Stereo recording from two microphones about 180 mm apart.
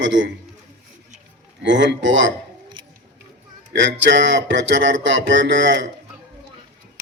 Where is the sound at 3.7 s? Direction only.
85° right.